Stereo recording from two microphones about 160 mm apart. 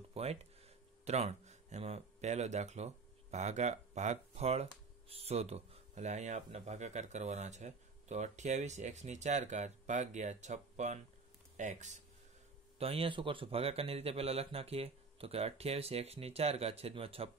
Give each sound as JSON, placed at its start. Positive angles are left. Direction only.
{"t": 0.1, "sound": "speech", "side_deg": -40}
{"t": 12.7, "sound": "a man's voice", "side_deg": -35}